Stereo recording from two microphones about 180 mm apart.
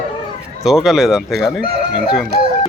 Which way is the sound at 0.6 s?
Centre (ahead or behind).